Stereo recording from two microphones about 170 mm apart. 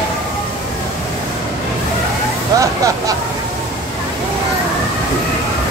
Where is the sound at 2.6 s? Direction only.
20° right (ahead or behind).